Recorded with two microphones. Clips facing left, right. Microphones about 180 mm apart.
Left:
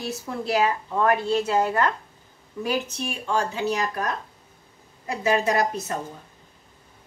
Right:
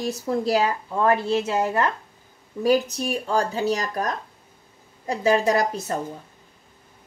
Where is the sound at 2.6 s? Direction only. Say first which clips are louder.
Right 6 dB; 40° right (ahead or behind).